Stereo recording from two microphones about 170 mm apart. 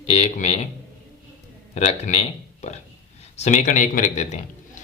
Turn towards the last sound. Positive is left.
turn(degrees=45)  # may be behind; listen again after turning